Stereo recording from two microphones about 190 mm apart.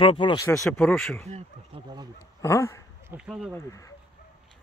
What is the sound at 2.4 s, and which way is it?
Speech, 15° left (ahead or behind).